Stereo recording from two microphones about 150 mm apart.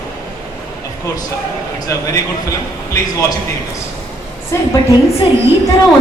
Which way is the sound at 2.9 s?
20° left (ahead or behind).